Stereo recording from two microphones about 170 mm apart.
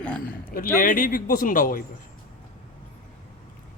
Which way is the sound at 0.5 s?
55° left (ahead or behind).